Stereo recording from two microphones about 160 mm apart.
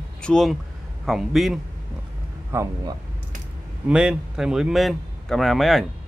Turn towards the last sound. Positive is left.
turn(degrees=0)  # may be behind; listen again after turning